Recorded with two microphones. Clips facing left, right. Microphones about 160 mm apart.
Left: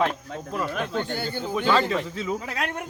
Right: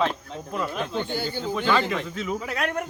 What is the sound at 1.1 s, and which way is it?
Speech, 55° left (ahead or behind).